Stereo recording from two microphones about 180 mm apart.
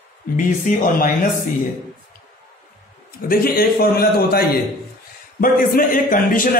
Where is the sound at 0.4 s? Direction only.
50° left (ahead or behind).